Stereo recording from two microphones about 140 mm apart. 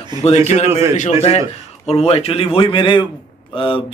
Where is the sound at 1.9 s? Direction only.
50° left (ahead or behind).